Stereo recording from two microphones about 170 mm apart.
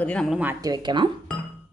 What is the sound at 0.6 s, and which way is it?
Speech, 25° right (ahead or behind).